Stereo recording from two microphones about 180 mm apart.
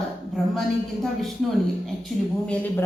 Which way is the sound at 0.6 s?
Centre (ahead or behind).